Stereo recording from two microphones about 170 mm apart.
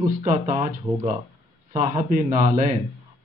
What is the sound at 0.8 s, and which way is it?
Speech, 20° right (ahead or behind).